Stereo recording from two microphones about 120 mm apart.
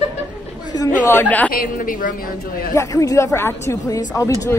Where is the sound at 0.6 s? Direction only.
35° left (ahead or behind).